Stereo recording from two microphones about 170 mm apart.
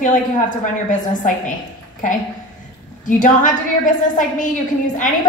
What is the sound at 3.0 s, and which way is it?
A woman's voice, 50° left (ahead or behind).